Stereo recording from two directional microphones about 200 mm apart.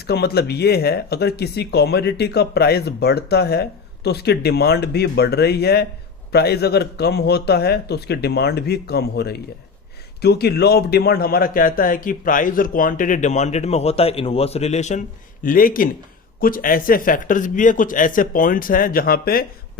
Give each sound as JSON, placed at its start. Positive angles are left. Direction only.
{"t": 0.1, "sound": "speech", "side_deg": 55}